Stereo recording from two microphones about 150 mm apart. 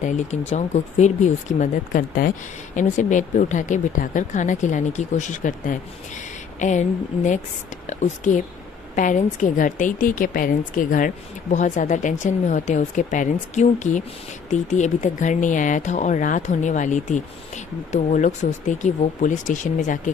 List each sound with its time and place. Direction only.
0.0 s speech: 50° left (ahead or behind)